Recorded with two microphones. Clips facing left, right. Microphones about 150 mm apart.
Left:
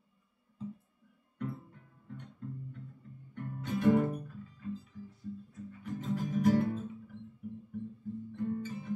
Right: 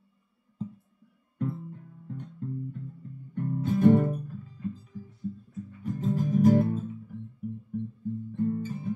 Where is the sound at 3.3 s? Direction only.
35° right (ahead or behind).